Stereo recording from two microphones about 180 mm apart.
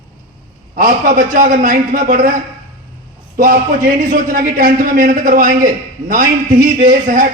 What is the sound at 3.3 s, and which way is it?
A man's voice, 50° right (ahead or behind).